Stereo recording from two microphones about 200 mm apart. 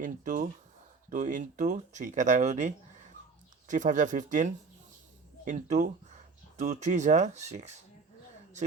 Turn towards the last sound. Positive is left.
turn(degrees=-35)  # may be behind; listen again after turning